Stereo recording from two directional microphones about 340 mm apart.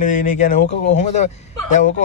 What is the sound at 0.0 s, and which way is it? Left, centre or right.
Speech, left.